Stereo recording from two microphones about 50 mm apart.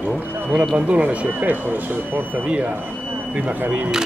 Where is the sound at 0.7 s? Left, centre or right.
Right.